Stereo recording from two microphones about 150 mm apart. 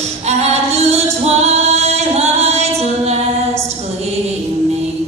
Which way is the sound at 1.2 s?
45° right (ahead or behind).